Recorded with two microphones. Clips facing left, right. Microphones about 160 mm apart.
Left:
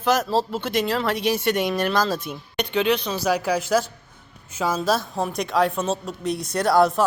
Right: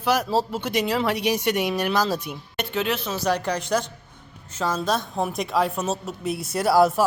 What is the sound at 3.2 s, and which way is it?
Speech, 5° left (ahead or behind).